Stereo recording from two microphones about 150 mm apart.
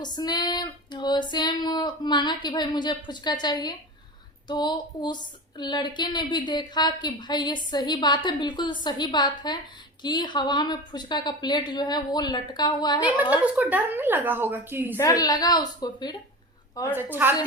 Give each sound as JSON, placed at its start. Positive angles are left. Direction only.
{"t": 0.0, "sound": "speech", "side_deg": 30}
{"t": 13.0, "sound": "a woman's voice", "side_deg": -10}
{"t": 14.9, "sound": "speech", "side_deg": 25}
{"t": 16.9, "sound": "a woman's voice", "side_deg": -15}